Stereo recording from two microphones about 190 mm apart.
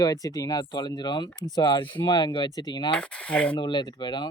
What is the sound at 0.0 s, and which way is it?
Speech, 20° left (ahead or behind).